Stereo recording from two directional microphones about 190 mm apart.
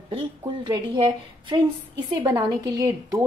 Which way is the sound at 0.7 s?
20° right (ahead or behind).